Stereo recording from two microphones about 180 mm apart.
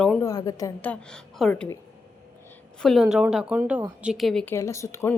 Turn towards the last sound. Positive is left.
turn(degrees=15)  # may be behind; listen again after turning